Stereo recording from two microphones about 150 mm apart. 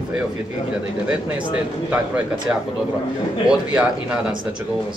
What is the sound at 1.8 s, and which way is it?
A man's voice, 10° right (ahead or behind).